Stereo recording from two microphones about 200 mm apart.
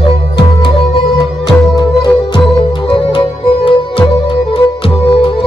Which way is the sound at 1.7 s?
20° left (ahead or behind).